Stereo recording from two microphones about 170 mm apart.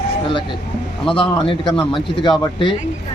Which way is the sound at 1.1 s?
30° left (ahead or behind).